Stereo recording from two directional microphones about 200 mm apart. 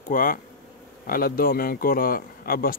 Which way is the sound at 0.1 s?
45° left (ahead or behind).